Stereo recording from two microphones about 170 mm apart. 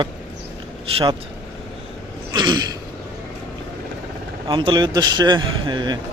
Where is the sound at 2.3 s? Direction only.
25° right (ahead or behind).